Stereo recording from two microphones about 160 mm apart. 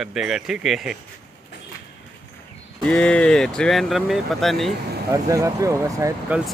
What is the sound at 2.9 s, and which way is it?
Speech, 5° left (ahead or behind).